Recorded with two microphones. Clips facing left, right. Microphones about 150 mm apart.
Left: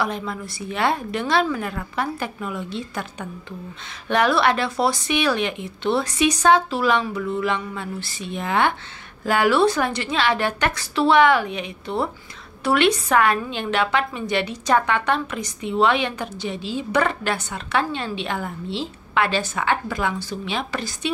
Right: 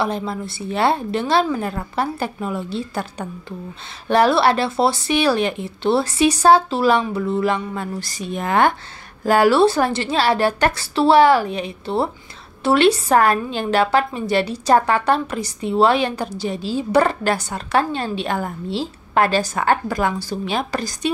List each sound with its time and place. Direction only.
0.0 s a woman's voice: 30° right (ahead or behind)